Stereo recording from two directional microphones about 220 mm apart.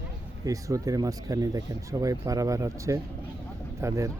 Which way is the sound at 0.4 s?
15° right (ahead or behind).